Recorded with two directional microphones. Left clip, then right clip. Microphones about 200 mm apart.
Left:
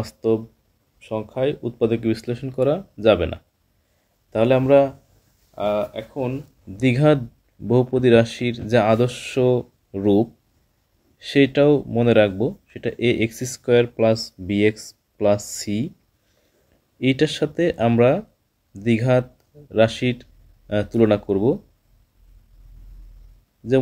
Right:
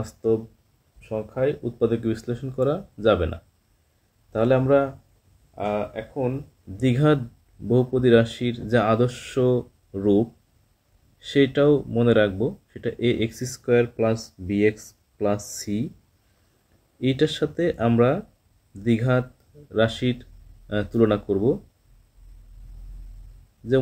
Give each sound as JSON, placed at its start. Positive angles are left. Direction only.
{"t": 0.0, "sound": "speech", "side_deg": 25}
{"t": 6.8, "sound": "speech", "side_deg": 20}
{"t": 17.0, "sound": "speech", "side_deg": 25}